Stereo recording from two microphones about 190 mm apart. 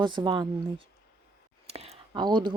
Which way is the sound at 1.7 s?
35° right (ahead or behind).